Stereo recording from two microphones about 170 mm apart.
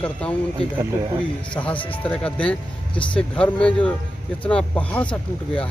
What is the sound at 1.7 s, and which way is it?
Speech, 30° left (ahead or behind).